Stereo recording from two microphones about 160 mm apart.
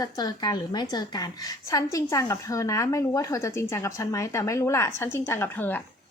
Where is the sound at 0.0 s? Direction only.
25° left (ahead or behind).